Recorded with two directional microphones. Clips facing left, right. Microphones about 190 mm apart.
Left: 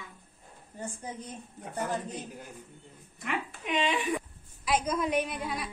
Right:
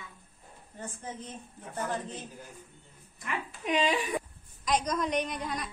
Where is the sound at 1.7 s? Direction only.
15° left (ahead or behind).